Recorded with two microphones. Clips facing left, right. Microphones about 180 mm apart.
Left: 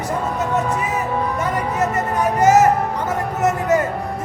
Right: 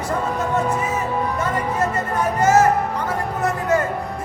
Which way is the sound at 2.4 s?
15° left (ahead or behind).